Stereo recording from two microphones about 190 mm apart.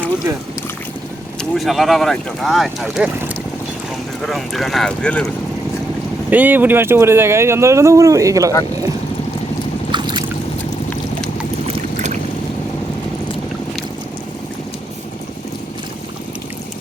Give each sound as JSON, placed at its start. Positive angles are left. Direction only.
{"t": 1.4, "sound": "speech", "side_deg": 0}
{"t": 4.2, "sound": "speech", "side_deg": 0}
{"t": 6.3, "sound": "speech", "side_deg": -10}
{"t": 9.9, "sound": "boat", "side_deg": -25}
{"t": 11.9, "sound": "boat", "side_deg": -35}